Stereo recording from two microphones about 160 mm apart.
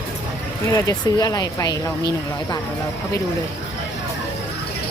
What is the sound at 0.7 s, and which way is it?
Speech, 25° left (ahead or behind).